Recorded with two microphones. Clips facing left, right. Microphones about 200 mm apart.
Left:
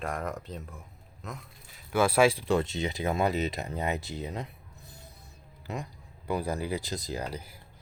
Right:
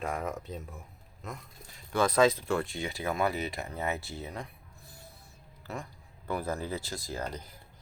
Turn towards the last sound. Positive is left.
turn(degrees=10)  # may be behind; listen again after turning